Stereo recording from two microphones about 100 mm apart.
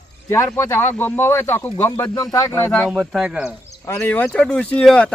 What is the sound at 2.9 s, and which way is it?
Speech, 5° right (ahead or behind).